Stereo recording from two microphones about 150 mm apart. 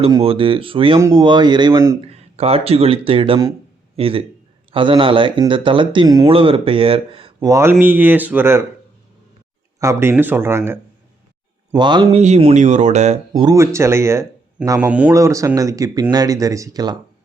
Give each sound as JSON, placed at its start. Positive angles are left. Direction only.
{"t": 0.2, "sound": "speech", "side_deg": -40}
{"t": 2.0, "sound": "speech", "side_deg": -40}
{"t": 7.3, "sound": "speech", "side_deg": -20}
{"t": 9.8, "sound": "speech", "side_deg": -15}
{"t": 11.7, "sound": "speech", "side_deg": -30}
{"t": 12.1, "sound": "speech", "side_deg": -45}
{"t": 13.4, "sound": "speech", "side_deg": -20}
{"t": 15.1, "sound": "speech", "side_deg": -20}